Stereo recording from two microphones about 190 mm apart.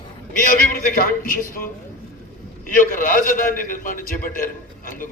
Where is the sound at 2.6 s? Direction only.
45° left (ahead or behind).